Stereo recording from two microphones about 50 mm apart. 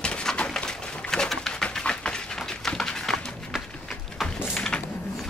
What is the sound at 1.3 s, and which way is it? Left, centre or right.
Pigeon, centre.